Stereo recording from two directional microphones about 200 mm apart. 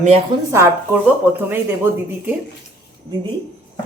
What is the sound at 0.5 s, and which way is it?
Speech, 10° right (ahead or behind).